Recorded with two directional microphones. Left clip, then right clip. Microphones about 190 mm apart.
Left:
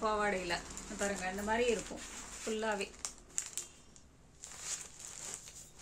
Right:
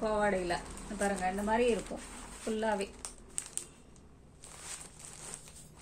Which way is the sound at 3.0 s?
Centre (ahead or behind).